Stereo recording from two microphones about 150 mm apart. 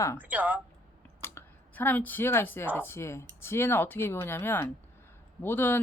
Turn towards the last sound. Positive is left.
turn(degrees=15)  # may be behind; listen again after turning